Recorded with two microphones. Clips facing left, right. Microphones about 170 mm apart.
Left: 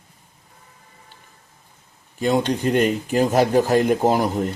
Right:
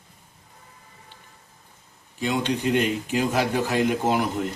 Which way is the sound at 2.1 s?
40° left (ahead or behind).